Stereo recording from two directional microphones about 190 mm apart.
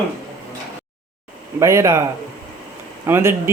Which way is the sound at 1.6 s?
15° right (ahead or behind).